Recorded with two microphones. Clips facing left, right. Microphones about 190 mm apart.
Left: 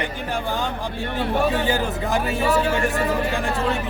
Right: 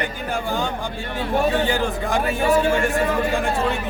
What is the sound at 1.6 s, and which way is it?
Speech, 5° left (ahead or behind).